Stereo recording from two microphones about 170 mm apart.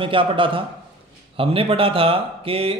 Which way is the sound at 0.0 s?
30° right (ahead or behind).